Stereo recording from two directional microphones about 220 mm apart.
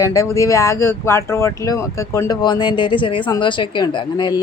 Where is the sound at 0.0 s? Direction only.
15° left (ahead or behind).